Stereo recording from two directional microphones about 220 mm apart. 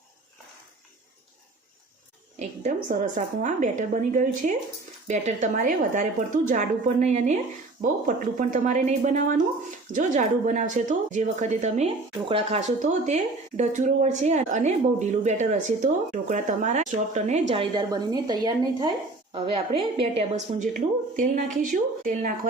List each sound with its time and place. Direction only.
2.4 s speech: 35° right (ahead or behind)